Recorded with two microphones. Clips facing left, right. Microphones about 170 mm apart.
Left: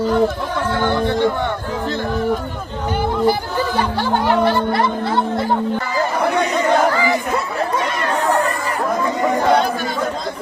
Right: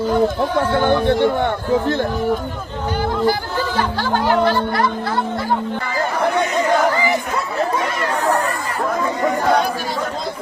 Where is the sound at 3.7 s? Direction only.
20° left (ahead or behind).